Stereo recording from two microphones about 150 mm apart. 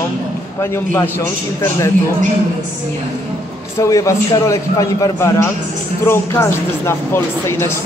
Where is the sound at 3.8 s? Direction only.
20° left (ahead or behind).